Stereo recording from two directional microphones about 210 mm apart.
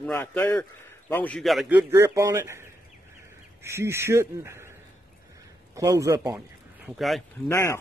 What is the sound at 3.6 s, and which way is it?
Speech, 15° right (ahead or behind).